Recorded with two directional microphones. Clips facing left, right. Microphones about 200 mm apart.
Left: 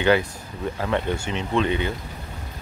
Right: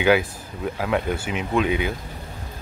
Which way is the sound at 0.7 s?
5° right (ahead or behind).